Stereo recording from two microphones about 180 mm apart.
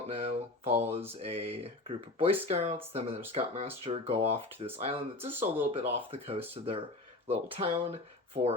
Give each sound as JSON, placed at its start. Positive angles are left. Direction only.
{"t": 0.1, "sound": "speech", "side_deg": -35}
{"t": 0.7, "sound": "speech", "side_deg": -10}
{"t": 1.2, "sound": "speech", "side_deg": -35}
{"t": 5.3, "sound": "speech", "side_deg": -10}
{"t": 5.7, "sound": "speech", "side_deg": -35}